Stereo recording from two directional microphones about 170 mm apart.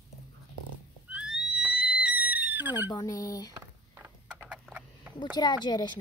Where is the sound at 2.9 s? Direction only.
20° left (ahead or behind).